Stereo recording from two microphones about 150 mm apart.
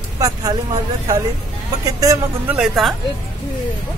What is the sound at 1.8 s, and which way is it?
Speech, 25° right (ahead or behind).